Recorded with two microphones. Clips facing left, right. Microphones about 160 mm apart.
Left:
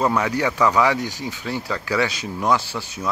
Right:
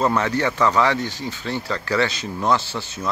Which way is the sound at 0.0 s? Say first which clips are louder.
Even; 10° left (ahead or behind).